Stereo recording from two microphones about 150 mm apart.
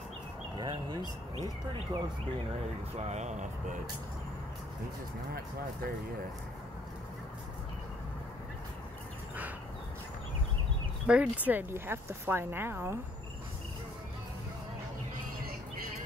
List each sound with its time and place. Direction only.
0.6 s a sound: 25° right (ahead or behind)
1.4 s speech: 30° right (ahead or behind)
3.0 s speech: 50° right (ahead or behind)
11.1 s speech: 10° right (ahead or behind)